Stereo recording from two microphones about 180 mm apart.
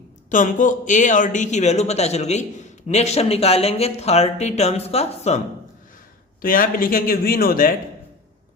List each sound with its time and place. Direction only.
0.3 s speech: 45° left (ahead or behind)
6.4 s speech: 50° left (ahead or behind)